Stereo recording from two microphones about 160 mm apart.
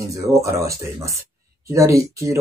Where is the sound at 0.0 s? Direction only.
20° right (ahead or behind).